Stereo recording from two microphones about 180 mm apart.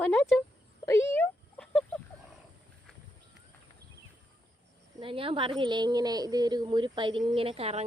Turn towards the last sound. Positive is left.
turn(degrees=-35)  # may be behind; listen again after turning